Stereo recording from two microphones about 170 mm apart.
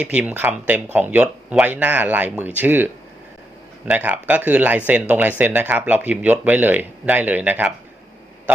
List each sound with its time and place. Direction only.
0.0 s speech: 5° right (ahead or behind)